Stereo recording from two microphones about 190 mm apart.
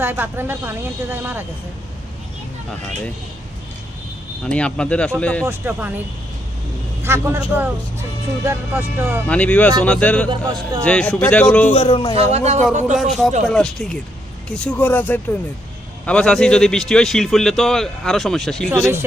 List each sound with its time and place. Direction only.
0.0 s speech: 10° right (ahead or behind)
4.4 s speech: 5° left (ahead or behind)
5.5 s speech: 10° right (ahead or behind)
7.0 s speech: 10° right (ahead or behind)
9.2 s a man's voice: 5° left (ahead or behind)
10.2 s a man's voice: 25° right (ahead or behind)
10.8 s a man's voice: 5° left (ahead or behind)
11.7 s speech: 30° left (ahead or behind)
12.1 s a man's voice: 35° right (ahead or behind)
13.0 s a man's voice: centre (ahead or behind)
18.7 s speech: 15° right (ahead or behind)